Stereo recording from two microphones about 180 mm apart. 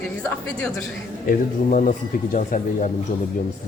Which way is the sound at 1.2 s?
45° left (ahead or behind).